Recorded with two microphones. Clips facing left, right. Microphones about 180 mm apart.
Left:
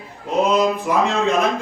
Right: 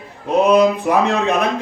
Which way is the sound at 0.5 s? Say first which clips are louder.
Right 4 dB; 65° right (ahead or behind).